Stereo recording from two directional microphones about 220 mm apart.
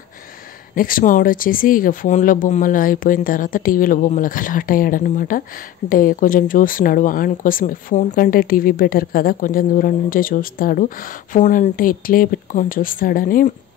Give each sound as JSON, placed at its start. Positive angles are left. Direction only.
{"t": 0.7, "sound": "speech", "side_deg": 40}